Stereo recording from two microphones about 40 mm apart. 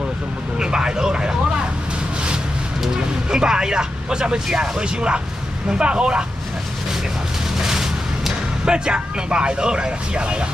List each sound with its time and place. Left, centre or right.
0.6 s vehicle: centre
3.3 s a man's voice: centre
7.5 s a sound: centre